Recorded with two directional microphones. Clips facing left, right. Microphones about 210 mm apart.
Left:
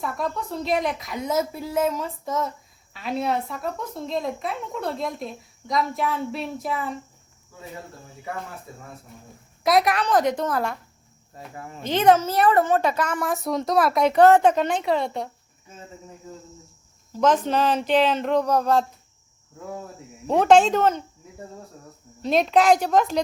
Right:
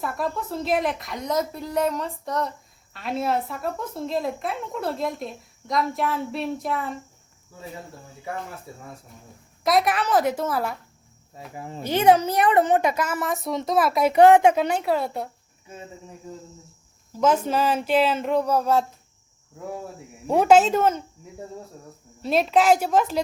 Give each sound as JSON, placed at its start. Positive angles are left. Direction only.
{"t": 0.0, "sound": "a woman's voice", "side_deg": 0}
{"t": 9.6, "sound": "a woman's voice", "side_deg": 0}
{"t": 11.5, "sound": "speech", "side_deg": -25}
{"t": 11.8, "sound": "a woman's voice", "side_deg": -10}
{"t": 17.2, "sound": "a woman's voice", "side_deg": -5}
{"t": 20.2, "sound": "a woman's voice", "side_deg": -10}
{"t": 22.2, "sound": "a woman's voice", "side_deg": -5}